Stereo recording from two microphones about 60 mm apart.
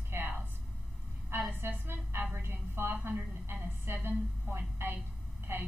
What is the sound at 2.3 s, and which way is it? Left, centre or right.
A woman's voice, right.